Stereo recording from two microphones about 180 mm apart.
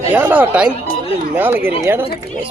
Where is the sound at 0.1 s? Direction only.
10° right (ahead or behind).